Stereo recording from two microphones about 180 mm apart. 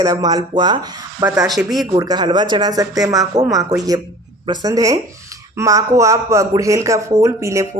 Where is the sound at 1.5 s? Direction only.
Centre (ahead or behind).